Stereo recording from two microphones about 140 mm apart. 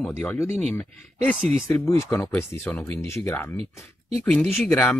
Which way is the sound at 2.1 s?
15° left (ahead or behind).